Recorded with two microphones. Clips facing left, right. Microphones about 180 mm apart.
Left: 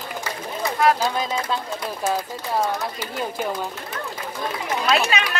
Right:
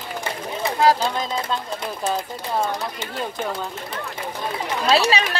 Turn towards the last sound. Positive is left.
turn(degrees=-35)  # may be behind; listen again after turning